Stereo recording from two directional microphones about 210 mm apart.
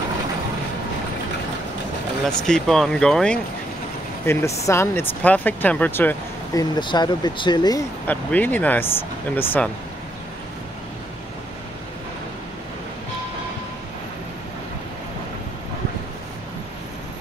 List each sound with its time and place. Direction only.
2.2 s speech: 5° left (ahead or behind)
6.8 s speech: 20° left (ahead or behind)
8.1 s speech: 10° left (ahead or behind)